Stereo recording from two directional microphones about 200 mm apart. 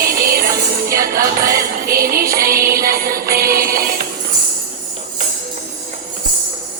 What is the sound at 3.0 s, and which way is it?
Music, 45° right (ahead or behind).